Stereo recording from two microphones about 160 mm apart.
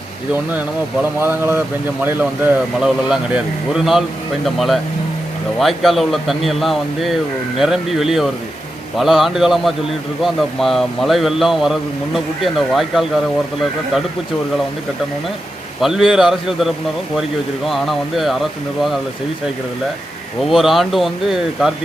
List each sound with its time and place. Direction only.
1.2 s speech: 15° right (ahead or behind)
15.8 s speech: 5° right (ahead or behind)
20.4 s speech: centre (ahead or behind)